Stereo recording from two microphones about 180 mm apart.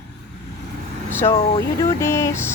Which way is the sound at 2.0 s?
15° left (ahead or behind).